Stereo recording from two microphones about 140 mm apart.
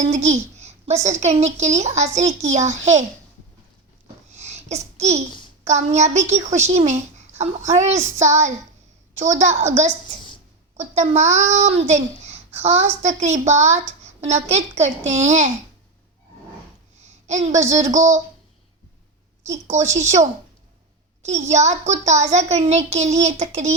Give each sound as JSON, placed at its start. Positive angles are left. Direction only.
{"t": 0.0, "sound": "a child's voice", "side_deg": -55}
{"t": 4.3, "sound": "babbling", "side_deg": -55}
{"t": 5.6, "sound": "a child's voice", "side_deg": -55}
{"t": 17.0, "sound": "a sound", "side_deg": -55}
{"t": 19.5, "sound": "a child's voice", "side_deg": -55}